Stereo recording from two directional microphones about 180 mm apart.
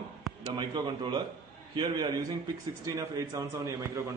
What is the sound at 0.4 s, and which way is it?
A man's voice, 20° right (ahead or behind).